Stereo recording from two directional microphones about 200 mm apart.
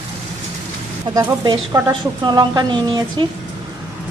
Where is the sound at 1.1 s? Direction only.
20° right (ahead or behind).